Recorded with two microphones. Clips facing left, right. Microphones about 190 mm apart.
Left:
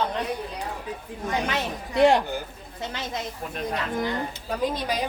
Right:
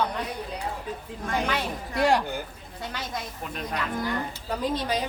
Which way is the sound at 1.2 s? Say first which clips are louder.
Left 1 dB; 20° left (ahead or behind).